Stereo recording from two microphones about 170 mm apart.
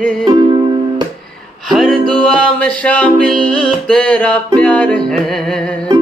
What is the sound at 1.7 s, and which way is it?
Music, centre (ahead or behind).